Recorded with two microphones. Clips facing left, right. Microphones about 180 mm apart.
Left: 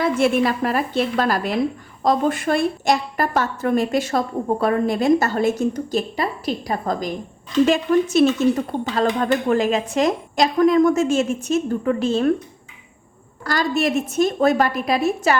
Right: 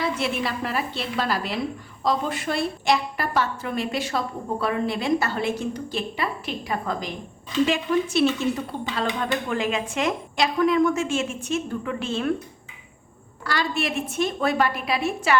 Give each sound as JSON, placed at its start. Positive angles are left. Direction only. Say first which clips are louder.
{"t": 0.0, "sound": "a woman's voice", "louder": "left 8 dB", "side_deg": 50}
{"t": 13.4, "sound": "speech", "louder": "left 6 dB", "side_deg": 45}